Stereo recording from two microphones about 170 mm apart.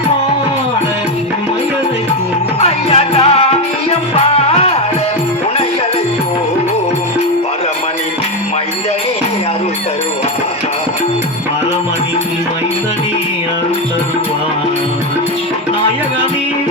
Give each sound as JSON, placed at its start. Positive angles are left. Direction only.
{"t": 2.6, "sound": "music", "side_deg": 35}